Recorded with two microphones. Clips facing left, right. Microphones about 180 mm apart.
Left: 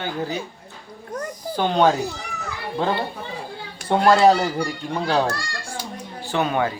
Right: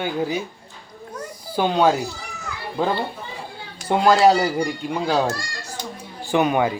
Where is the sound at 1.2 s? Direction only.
10° right (ahead or behind).